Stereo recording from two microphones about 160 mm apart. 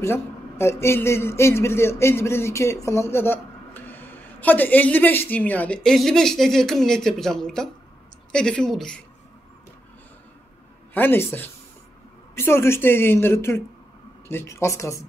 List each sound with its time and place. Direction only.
0.0 s a man's voice: 15° left (ahead or behind)
10.9 s a man's voice: 10° left (ahead or behind)